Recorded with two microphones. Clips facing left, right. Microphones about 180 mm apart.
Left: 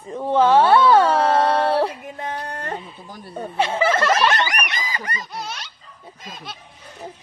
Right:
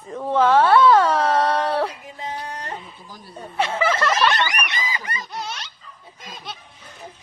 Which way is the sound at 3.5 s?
25° left (ahead or behind).